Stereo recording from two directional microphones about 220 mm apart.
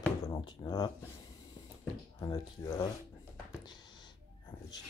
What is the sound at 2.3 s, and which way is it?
Speech, 15° left (ahead or behind).